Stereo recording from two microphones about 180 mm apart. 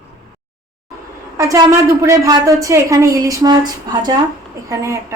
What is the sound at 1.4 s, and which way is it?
A woman's voice, 20° right (ahead or behind).